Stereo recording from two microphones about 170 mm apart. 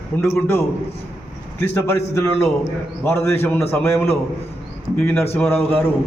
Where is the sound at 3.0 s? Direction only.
15° left (ahead or behind).